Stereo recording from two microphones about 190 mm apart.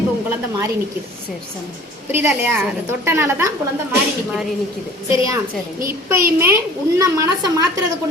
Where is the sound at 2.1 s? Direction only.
10° right (ahead or behind).